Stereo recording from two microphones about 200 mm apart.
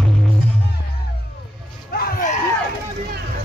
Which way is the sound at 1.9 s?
50° left (ahead or behind).